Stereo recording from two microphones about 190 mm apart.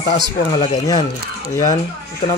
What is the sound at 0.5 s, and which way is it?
Speech, 25° left (ahead or behind).